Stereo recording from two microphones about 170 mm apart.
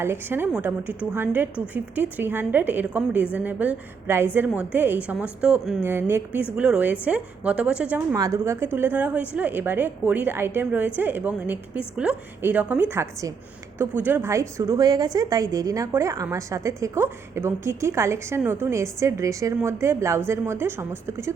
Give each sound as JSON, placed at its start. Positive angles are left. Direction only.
{"t": 0.0, "sound": "a woman's voice", "side_deg": -15}
{"t": 8.1, "sound": "a woman's voice", "side_deg": -20}